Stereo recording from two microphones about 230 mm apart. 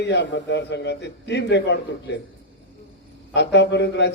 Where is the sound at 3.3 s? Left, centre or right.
Left.